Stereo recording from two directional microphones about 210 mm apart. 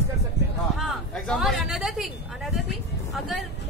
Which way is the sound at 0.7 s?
Centre (ahead or behind).